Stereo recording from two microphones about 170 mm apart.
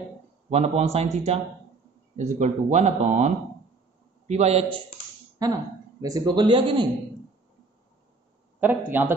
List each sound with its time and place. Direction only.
0.5 s speech: 40° right (ahead or behind)
5.4 s a man's voice: 20° right (ahead or behind)
8.5 s a man's voice: 10° right (ahead or behind)